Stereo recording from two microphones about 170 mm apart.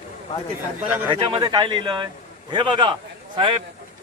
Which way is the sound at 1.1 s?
30° right (ahead or behind).